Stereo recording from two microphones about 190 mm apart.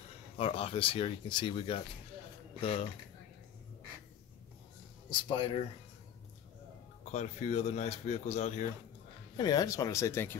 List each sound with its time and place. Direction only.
0.4 s speech: 30° left (ahead or behind)
5.1 s speech: 25° left (ahead or behind)
7.1 s speech: 35° left (ahead or behind)
9.4 s speech: 20° left (ahead or behind)